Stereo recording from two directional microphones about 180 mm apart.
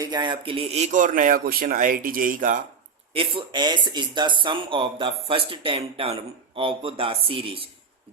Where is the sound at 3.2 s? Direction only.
25° right (ahead or behind).